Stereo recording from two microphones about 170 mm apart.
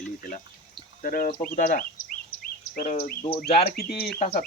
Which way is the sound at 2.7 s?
60° left (ahead or behind).